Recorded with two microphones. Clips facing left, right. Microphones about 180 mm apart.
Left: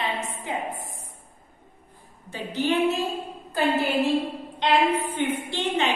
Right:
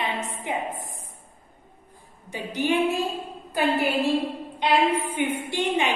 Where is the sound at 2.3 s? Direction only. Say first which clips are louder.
Even; 15° right (ahead or behind).